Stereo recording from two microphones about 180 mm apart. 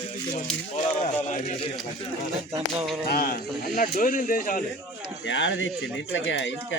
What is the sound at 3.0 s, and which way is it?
Speech, 60° left (ahead or behind).